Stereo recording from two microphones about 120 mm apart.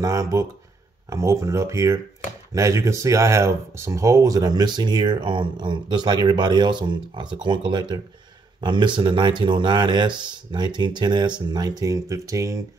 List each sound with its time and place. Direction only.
0.0 s speech: 30° right (ahead or behind)